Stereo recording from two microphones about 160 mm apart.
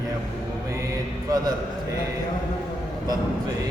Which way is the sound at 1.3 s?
25° right (ahead or behind).